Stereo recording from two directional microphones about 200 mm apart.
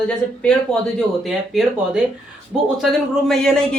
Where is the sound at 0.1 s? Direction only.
5° left (ahead or behind).